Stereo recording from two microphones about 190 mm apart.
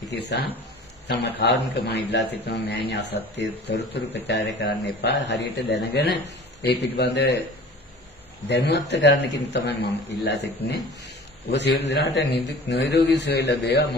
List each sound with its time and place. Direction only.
0.1 s a man's voice: 60° left (ahead or behind)
8.5 s a man's voice: 60° left (ahead or behind)